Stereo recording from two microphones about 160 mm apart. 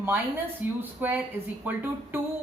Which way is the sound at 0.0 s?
10° right (ahead or behind).